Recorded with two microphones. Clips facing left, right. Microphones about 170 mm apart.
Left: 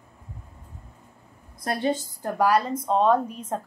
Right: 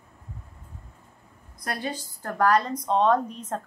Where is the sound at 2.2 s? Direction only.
10° left (ahead or behind).